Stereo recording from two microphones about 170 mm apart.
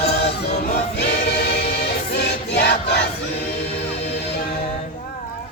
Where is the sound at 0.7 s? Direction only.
75° left (ahead or behind).